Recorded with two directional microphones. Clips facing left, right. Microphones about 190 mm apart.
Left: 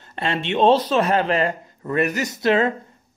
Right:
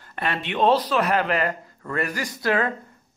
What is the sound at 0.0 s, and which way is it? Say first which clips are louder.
Speech: left 3 dB; 25° left (ahead or behind).